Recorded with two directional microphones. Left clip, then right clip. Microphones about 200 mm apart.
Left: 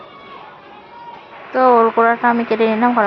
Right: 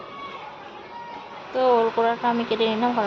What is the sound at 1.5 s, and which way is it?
Speech, 20° left (ahead or behind).